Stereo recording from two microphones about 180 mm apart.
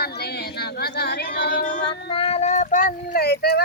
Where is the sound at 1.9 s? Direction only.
30° left (ahead or behind); by 3.6 s 60° left (ahead or behind).